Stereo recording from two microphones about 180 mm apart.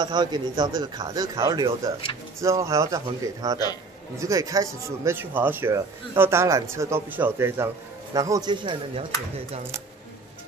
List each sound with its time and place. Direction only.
0.0 s a man's voice: 25° right (ahead or behind)